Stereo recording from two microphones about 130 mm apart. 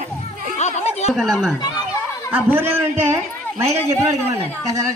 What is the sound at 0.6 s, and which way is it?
Chatter, 60° left (ahead or behind).